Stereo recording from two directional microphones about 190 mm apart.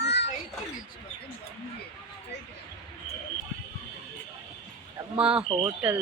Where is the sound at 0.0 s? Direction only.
60° left (ahead or behind).